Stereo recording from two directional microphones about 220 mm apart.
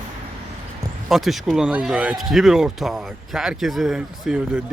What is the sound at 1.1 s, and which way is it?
Speech, centre (ahead or behind).